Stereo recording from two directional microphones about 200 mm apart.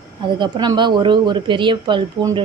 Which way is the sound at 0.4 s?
20° right (ahead or behind).